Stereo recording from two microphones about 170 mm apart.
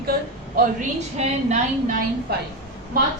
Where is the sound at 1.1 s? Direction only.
40° right (ahead or behind).